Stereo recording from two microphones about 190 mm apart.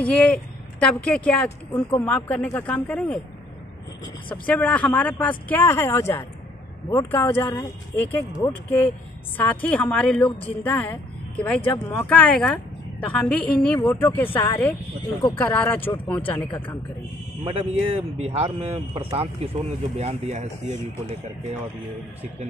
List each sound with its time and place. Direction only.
0.0 s speech: 5° left (ahead or behind)
4.5 s speech: 5° left (ahead or behind)
17.5 s speech: 30° right (ahead or behind)